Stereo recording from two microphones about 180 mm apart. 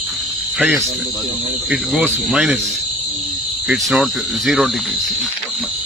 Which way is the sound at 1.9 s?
Centre (ahead or behind).